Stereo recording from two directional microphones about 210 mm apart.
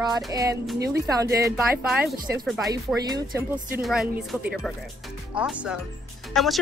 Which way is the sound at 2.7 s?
15° right (ahead or behind).